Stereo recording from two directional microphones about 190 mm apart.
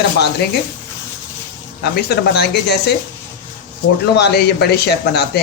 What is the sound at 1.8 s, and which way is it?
Speech, 60° left (ahead or behind).